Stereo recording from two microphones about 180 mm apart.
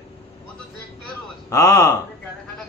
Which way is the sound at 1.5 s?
15° left (ahead or behind).